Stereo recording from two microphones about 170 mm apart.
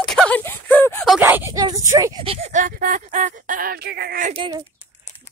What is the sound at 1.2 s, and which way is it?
Speech, 15° right (ahead or behind).